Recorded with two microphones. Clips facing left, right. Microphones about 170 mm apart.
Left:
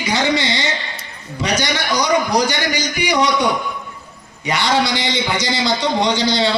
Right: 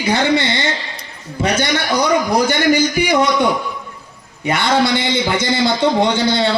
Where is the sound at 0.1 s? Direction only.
55° right (ahead or behind).